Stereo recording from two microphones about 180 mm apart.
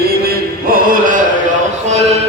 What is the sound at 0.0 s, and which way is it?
Chant, 55° right (ahead or behind).